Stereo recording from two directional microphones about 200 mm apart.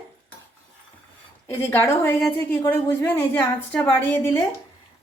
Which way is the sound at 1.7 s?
10° left (ahead or behind).